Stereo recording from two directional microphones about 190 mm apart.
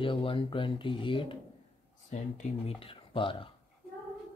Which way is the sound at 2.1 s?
40° left (ahead or behind).